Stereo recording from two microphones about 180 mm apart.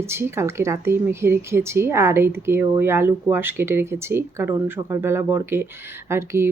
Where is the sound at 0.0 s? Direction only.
15° right (ahead or behind).